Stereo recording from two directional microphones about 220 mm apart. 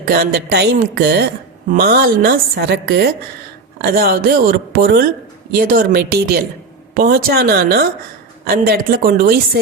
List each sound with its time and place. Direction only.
0.0 s a woman's voice: 45° right (ahead or behind)